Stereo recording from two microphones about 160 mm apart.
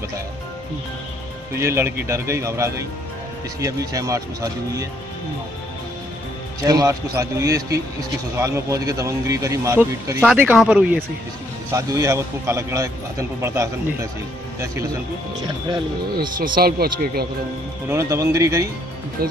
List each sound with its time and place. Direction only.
1.5 s speech: 15° right (ahead or behind)
6.6 s speech: 20° right (ahead or behind)
11.7 s speech: 20° right (ahead or behind)
16.5 s speech: 70° right (ahead or behind)
17.8 s speech: 20° right (ahead or behind)